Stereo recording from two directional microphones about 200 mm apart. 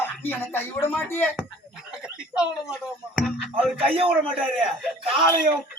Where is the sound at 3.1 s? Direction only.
Centre (ahead or behind).